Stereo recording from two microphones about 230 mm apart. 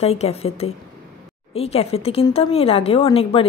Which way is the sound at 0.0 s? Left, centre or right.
Left.